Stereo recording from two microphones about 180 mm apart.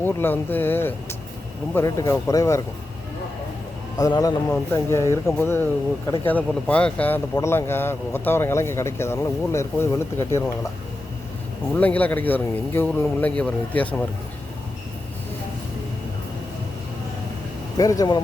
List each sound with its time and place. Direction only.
0.0 s speech: 10° left (ahead or behind)
3.9 s speech: 20° left (ahead or behind)
11.7 s speech: 10° left (ahead or behind)
17.7 s speech: 20° left (ahead or behind)